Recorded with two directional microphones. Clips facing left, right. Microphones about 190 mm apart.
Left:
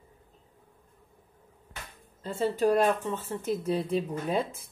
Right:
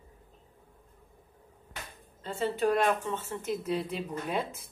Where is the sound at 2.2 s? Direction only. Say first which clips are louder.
Left 3 dB; 35° left (ahead or behind).